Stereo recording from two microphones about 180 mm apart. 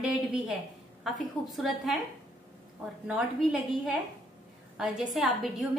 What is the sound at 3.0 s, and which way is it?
A woman's voice, 5° right (ahead or behind).